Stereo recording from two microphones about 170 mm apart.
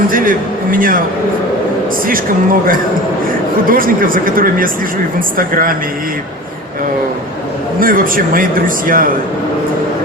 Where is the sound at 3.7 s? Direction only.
55° right (ahead or behind).